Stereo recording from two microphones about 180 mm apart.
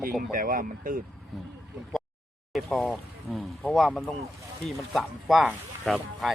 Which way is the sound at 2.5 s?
Centre (ahead or behind).